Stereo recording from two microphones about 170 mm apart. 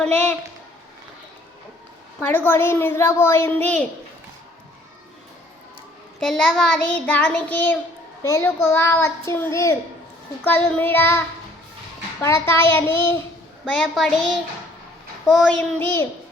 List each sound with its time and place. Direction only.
2.2 s a child's voice: 10° left (ahead or behind)
6.1 s a child's voice: 5° left (ahead or behind)
12.2 s a child's voice: 15° left (ahead or behind)
15.3 s a woman's voice: centre (ahead or behind)
15.8 s a child's voice: 10° left (ahead or behind)